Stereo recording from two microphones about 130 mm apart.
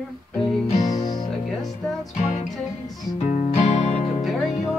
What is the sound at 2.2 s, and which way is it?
Music, 65° left (ahead or behind).